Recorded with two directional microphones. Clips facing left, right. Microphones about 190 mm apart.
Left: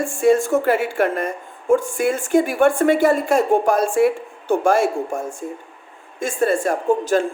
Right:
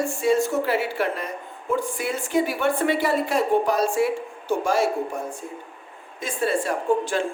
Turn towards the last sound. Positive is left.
turn(degrees=45)  # may be behind; listen again after turning